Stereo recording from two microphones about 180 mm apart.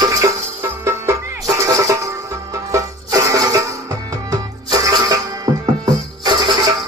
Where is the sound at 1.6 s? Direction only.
15° right (ahead or behind).